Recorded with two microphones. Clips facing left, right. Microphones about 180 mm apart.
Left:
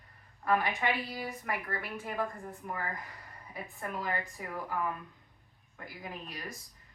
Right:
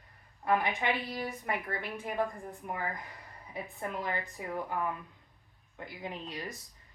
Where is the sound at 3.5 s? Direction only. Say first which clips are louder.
Right 2 dB; 25° right (ahead or behind).